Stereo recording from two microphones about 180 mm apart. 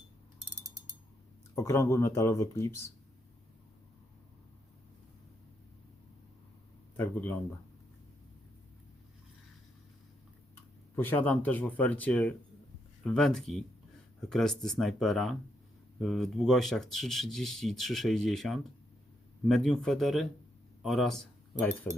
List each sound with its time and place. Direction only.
1.5 s speech: 15° left (ahead or behind)
6.9 s speech: 10° left (ahead or behind)
10.9 s speech: 10° left (ahead or behind)